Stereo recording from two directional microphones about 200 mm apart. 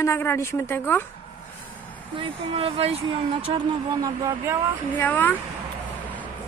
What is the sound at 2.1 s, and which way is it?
Speech, 30° right (ahead or behind).